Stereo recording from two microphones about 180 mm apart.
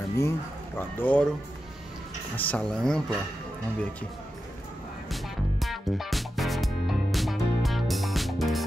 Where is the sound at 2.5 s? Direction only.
5° left (ahead or behind).